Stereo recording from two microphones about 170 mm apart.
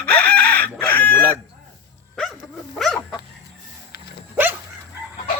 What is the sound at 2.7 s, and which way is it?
Dog, centre (ahead or behind).